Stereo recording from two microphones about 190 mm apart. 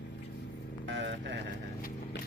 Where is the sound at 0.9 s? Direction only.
70° right (ahead or behind).